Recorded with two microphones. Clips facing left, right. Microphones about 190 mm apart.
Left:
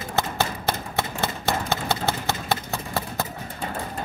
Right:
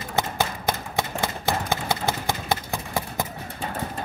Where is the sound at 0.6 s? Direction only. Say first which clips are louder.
Even; 15° right (ahead or behind).